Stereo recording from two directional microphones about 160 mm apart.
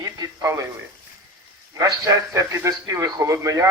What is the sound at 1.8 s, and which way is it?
A man's voice, 20° right (ahead or behind).